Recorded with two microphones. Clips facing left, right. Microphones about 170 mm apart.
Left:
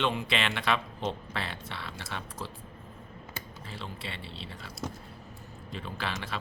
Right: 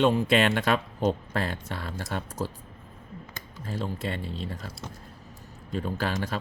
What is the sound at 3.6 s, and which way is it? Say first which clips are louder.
Speech: right 11 dB; 45° right (ahead or behind).